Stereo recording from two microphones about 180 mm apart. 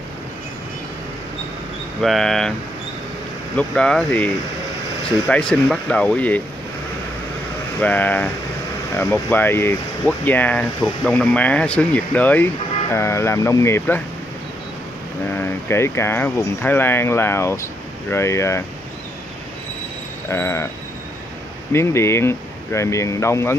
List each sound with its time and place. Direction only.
2.0 s speech: centre (ahead or behind)
3.5 s speech: 5° left (ahead or behind)
5.3 s speech: 5° left (ahead or behind)
7.8 s speech: 10° left (ahead or behind)
15.3 s speech: 15° left (ahead or behind)
20.2 s speech: 15° left (ahead or behind)
21.7 s speech: 15° left (ahead or behind)